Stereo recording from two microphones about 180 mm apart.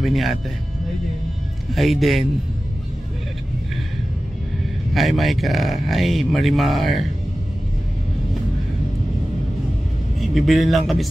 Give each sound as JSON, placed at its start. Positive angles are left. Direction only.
{"t": 0.0, "sound": "speech", "side_deg": 0}
{"t": 1.7, "sound": "speech", "side_deg": 0}
{"t": 4.9, "sound": "speech", "side_deg": 0}
{"t": 10.3, "sound": "speech", "side_deg": 0}